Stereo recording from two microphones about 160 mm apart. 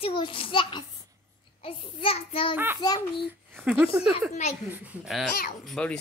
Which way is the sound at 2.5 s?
15° right (ahead or behind).